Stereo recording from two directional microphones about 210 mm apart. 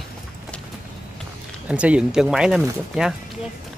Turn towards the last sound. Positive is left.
turn(degrees=-5)  # may be behind; listen again after turning